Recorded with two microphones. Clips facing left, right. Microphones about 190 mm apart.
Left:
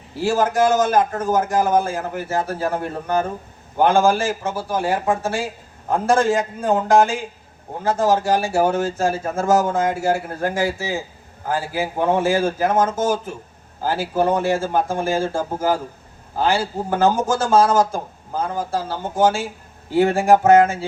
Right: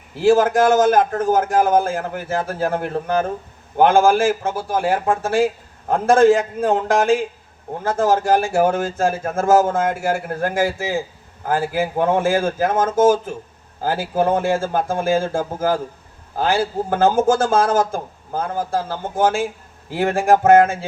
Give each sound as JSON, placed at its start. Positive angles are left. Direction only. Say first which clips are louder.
{"t": 0.3, "sound": "speech", "louder": "right 4 dB", "side_deg": -55}
{"t": 3.8, "sound": "a man's voice", "louder": "right 2 dB", "side_deg": -55}